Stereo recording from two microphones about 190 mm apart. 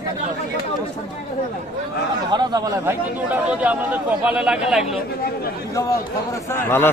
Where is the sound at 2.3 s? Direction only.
20° right (ahead or behind).